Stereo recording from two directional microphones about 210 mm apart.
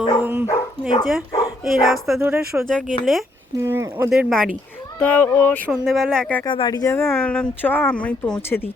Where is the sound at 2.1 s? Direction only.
10° right (ahead or behind).